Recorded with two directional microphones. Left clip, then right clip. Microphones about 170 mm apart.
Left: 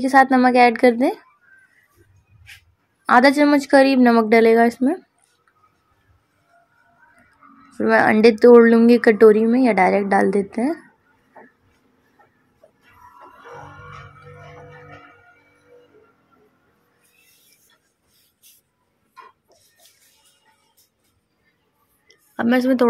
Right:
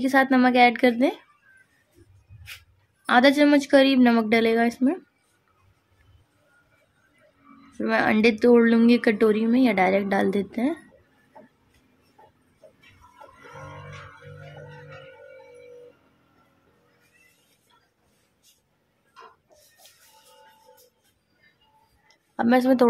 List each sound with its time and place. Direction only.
0.0 s speech: 10° left (ahead or behind)
3.1 s speech: 15° left (ahead or behind)
7.7 s speech: 15° left (ahead or behind)
22.0 s a sound: 15° left (ahead or behind)